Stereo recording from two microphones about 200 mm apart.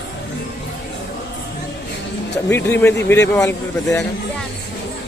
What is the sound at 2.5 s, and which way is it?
A man's voice, 10° left (ahead or behind).